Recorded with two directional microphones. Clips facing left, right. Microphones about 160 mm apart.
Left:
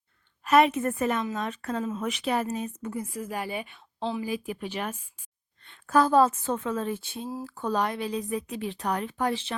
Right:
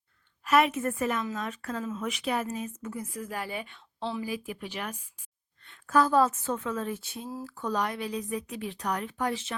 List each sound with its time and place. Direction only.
0.4 s a woman's voice: 35° left (ahead or behind)
3.1 s a woman's voice: 20° left (ahead or behind)